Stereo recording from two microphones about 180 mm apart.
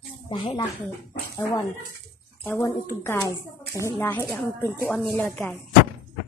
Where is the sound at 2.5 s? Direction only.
15° left (ahead or behind).